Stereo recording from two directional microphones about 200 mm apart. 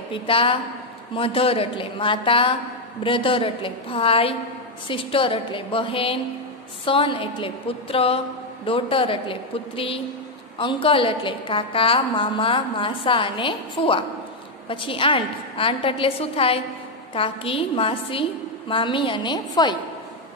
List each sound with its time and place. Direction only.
0.1 s a woman's voice: 25° left (ahead or behind)